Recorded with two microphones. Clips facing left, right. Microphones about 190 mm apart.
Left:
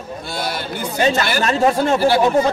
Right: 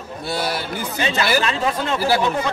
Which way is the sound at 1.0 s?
40° left (ahead or behind).